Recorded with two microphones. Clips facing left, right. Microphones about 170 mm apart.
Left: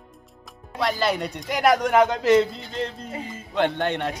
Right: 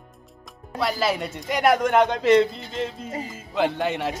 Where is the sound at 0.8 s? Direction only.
Centre (ahead or behind).